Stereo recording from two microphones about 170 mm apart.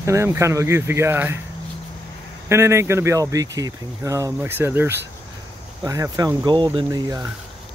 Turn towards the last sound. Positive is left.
turn(degrees=-20)  # may be behind; listen again after turning